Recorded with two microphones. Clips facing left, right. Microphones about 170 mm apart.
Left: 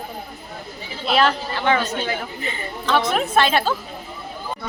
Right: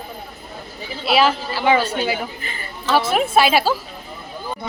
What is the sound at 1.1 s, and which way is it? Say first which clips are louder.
Speech: right 2 dB; 5° right (ahead or behind).